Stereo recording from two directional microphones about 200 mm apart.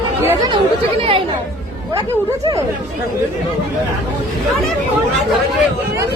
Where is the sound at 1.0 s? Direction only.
30° right (ahead or behind).